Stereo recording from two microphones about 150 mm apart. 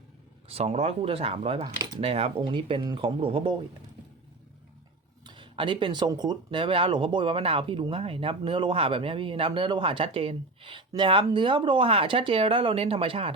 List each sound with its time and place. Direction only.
0.4 s speech: 45° right (ahead or behind)
5.2 s speech: 30° right (ahead or behind)